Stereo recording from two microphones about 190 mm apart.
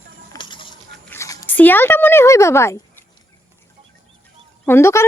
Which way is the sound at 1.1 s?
15° left (ahead or behind).